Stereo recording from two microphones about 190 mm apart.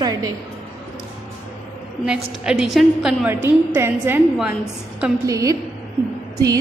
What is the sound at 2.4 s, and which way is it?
A woman's voice, 5° right (ahead or behind).